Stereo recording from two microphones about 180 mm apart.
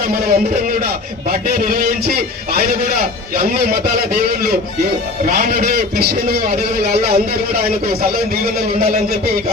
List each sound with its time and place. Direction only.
0.0 s a man's voice: 55° right (ahead or behind)
8.7 s a man's voice: 55° right (ahead or behind)